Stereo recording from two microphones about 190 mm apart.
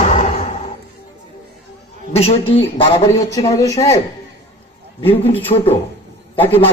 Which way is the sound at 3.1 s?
15° left (ahead or behind).